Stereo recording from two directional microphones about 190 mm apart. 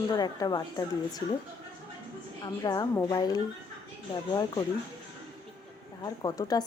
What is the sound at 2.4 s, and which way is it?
Speech, 20° left (ahead or behind).